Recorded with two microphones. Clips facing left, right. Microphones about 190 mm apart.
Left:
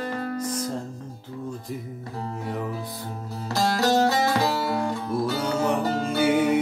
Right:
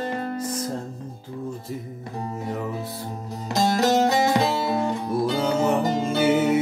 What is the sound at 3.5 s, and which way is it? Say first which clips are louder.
Music: right 2 dB; 20° right (ahead or behind).